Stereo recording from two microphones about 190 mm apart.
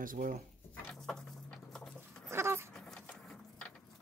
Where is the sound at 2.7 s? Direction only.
5° left (ahead or behind).